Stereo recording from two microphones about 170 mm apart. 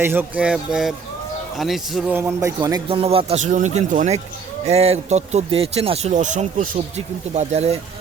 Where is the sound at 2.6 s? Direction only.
30° right (ahead or behind).